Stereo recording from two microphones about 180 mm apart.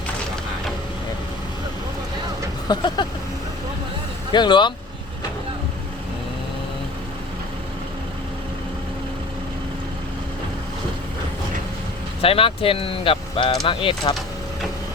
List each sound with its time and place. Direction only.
2.6 s speech: 25° left (ahead or behind)
4.3 s speech: 25° left (ahead or behind)
12.2 s speech: 30° left (ahead or behind)